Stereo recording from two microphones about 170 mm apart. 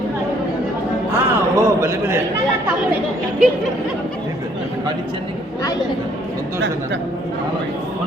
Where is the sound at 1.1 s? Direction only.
15° right (ahead or behind).